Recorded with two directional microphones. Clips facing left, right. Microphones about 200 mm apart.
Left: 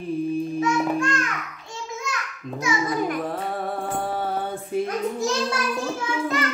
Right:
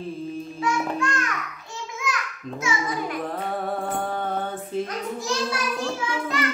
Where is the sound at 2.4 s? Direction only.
Centre (ahead or behind).